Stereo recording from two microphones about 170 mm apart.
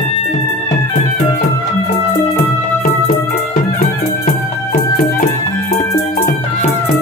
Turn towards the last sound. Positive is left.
turn(degrees=60)  # may be behind; listen again after turning